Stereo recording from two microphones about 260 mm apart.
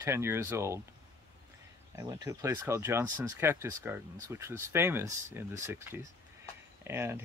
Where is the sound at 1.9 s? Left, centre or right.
Centre.